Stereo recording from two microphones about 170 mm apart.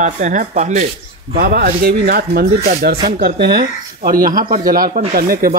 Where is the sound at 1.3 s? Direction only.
60° right (ahead or behind).